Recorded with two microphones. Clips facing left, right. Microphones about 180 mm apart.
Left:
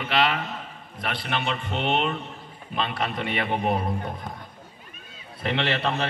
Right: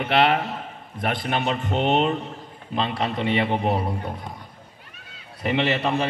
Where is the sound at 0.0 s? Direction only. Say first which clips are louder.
Right 4 dB; 55° right (ahead or behind); by 2.1 s 40° right (ahead or behind).